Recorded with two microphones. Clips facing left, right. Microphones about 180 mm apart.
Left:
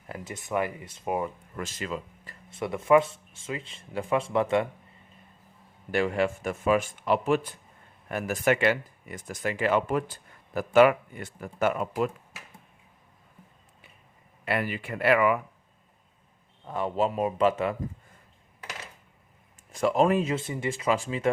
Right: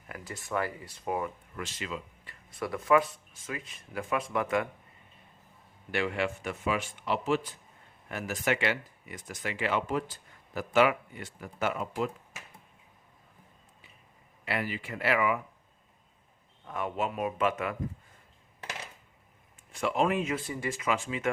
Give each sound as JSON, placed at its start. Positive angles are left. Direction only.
{"t": 0.1, "sound": "speech", "side_deg": 20}
{"t": 1.5, "sound": "speech", "side_deg": 45}
{"t": 2.5, "sound": "speech", "side_deg": 25}
{"t": 5.9, "sound": "speech", "side_deg": 40}
{"t": 14.4, "sound": "speech", "side_deg": 55}
{"t": 16.6, "sound": "speech", "side_deg": 30}
{"t": 19.7, "sound": "speech", "side_deg": 40}